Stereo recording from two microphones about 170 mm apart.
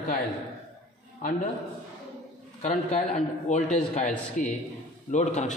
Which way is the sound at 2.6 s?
40° left (ahead or behind).